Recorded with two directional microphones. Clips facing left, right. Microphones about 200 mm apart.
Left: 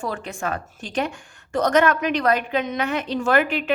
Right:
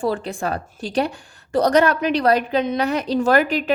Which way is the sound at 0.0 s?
35° right (ahead or behind).